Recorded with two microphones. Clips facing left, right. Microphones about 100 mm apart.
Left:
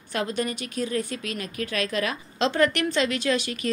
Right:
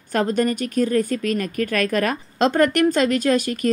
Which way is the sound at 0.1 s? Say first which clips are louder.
Right 8 dB; 45° right (ahead or behind).